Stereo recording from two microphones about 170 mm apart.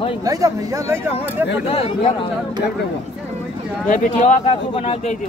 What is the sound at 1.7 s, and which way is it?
Speech, 35° left (ahead or behind).